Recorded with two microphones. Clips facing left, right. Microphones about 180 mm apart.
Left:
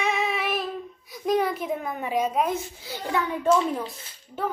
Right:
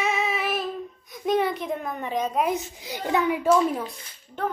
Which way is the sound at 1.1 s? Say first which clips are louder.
Even; centre (ahead or behind).